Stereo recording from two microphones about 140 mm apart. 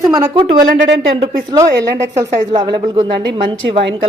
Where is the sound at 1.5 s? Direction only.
25° right (ahead or behind).